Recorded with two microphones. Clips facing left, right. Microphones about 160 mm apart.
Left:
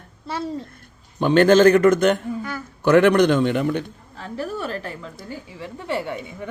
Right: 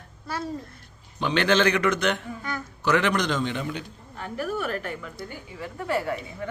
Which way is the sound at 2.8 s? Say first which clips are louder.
Left 9 dB; 55° left (ahead or behind).